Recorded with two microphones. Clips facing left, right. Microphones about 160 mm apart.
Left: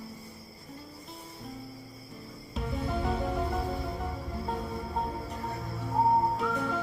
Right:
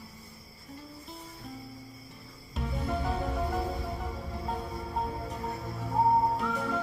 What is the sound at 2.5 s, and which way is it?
Music, centre (ahead or behind).